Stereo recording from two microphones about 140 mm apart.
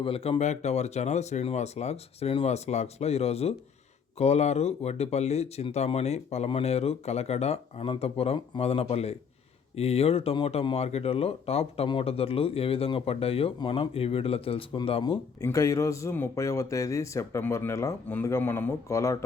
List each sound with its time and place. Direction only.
0.0 s speech: 40° left (ahead or behind)
15.4 s speech: 25° left (ahead or behind)